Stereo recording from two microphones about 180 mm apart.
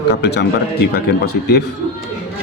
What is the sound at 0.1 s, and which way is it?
Speech, 70° left (ahead or behind).